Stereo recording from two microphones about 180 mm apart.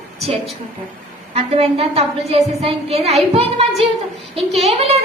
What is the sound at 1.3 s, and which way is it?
A woman's voice, 35° right (ahead or behind).